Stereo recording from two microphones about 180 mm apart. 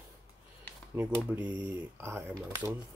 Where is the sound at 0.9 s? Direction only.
10° right (ahead or behind).